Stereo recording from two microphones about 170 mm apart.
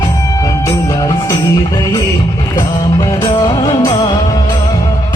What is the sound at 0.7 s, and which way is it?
Music, 20° left (ahead or behind).